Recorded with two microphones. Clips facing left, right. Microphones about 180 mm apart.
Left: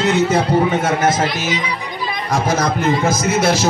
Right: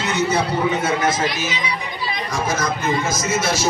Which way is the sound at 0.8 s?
45° left (ahead or behind).